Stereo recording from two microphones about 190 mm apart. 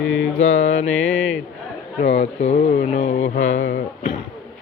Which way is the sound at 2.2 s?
35° left (ahead or behind).